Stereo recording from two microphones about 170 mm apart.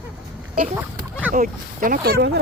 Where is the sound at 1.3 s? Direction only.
55° right (ahead or behind); by 2.4 s 90° right.